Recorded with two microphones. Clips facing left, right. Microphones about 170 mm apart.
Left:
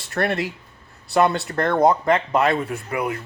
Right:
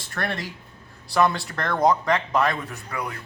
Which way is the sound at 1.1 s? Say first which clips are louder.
Left 3 dB; 25° left (ahead or behind).